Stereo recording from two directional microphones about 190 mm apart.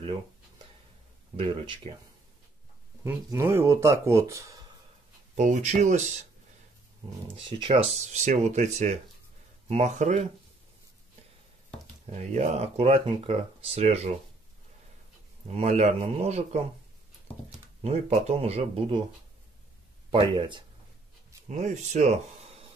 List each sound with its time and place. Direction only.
1.3 s speech: 30° right (ahead or behind)
3.0 s speech: 15° right (ahead or behind)
5.3 s speech: 40° right (ahead or behind)
7.3 s speech: 25° right (ahead or behind)
12.1 s speech: 35° right (ahead or behind)
15.4 s speech: 35° right (ahead or behind)
17.8 s speech: 35° right (ahead or behind)
20.1 s speech: 25° right (ahead or behind)
21.5 s speech: 40° right (ahead or behind)